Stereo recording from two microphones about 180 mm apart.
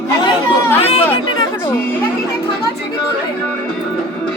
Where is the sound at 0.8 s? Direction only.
35° left (ahead or behind).